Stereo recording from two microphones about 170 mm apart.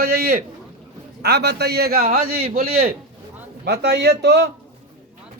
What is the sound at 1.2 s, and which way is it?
A man's voice, 80° right.